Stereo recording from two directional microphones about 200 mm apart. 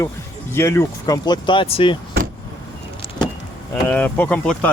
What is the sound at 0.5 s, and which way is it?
Speech, 15° left (ahead or behind).